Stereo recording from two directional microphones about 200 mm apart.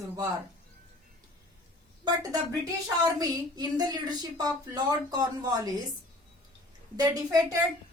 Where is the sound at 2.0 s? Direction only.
15° right (ahead or behind).